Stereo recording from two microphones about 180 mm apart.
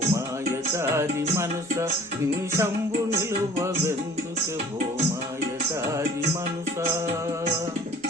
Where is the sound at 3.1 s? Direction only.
15° right (ahead or behind).